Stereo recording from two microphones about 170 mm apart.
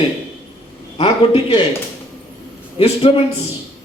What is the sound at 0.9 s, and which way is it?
Speech, 35° left (ahead or behind).